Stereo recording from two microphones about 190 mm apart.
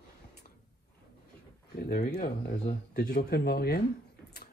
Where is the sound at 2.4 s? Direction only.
55° left (ahead or behind).